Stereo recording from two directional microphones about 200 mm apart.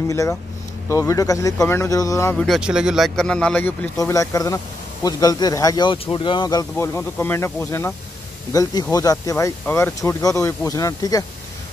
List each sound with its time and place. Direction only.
0.1 s speech: 15° left (ahead or behind)
8.9 s speech: 15° left (ahead or behind)